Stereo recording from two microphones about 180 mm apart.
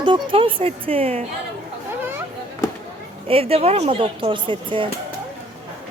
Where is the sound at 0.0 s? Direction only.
25° right (ahead or behind).